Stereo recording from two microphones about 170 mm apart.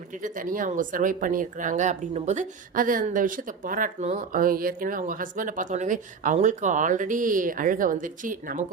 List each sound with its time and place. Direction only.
0.1 s speech: 50° right (ahead or behind)